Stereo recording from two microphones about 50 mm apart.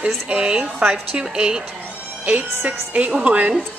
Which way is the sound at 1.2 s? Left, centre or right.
Centre.